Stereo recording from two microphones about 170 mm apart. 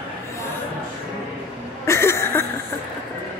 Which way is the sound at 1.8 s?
15° left (ahead or behind).